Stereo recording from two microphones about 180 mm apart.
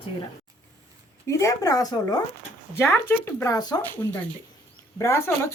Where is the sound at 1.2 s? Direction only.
15° left (ahead or behind).